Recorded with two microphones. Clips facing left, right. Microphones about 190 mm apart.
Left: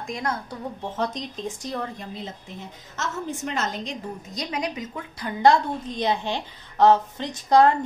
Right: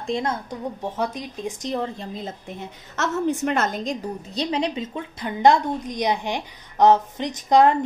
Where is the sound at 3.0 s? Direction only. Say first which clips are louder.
Right 7 dB; 65° right (ahead or behind).